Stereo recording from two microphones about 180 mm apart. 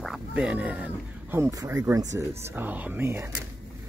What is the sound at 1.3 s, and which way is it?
Speech, 15° right (ahead or behind).